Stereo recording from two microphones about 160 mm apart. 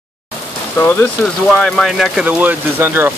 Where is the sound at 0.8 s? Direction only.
15° left (ahead or behind).